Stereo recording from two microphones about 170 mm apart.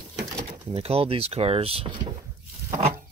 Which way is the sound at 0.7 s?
35° right (ahead or behind).